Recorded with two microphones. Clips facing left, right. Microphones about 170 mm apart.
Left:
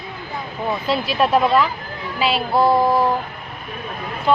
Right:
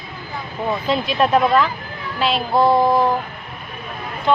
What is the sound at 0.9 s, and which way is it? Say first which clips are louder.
Music: right 1 dB; 5° left (ahead or behind).